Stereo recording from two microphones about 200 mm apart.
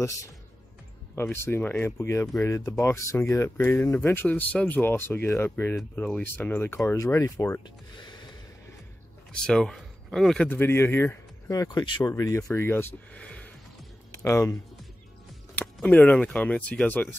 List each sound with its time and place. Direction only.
1.1 s a man's voice: 10° left (ahead or behind)
9.3 s a man's voice: 5° left (ahead or behind)